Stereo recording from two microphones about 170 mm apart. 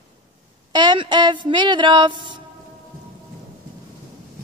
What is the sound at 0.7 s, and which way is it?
Speech, 30° right (ahead or behind).